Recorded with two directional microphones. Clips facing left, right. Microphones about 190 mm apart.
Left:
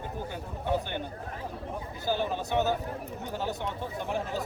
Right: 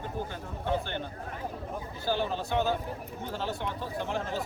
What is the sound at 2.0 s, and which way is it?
Speech, 15° left (ahead or behind).